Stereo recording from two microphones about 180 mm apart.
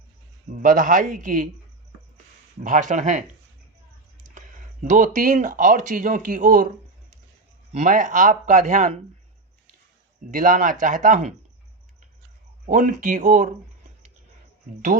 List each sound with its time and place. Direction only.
0.6 s speech: 50° right (ahead or behind)
2.6 s speech: 45° right (ahead or behind)
4.4 s speech: 45° right (ahead or behind)
7.7 s speech: 45° right (ahead or behind)
10.3 s speech: 45° right (ahead or behind)
12.6 s speech: 45° right (ahead or behind)